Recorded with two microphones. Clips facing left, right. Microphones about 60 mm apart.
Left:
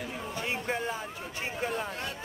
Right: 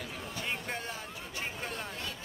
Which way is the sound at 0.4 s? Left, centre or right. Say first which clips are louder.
Left 5 dB; centre.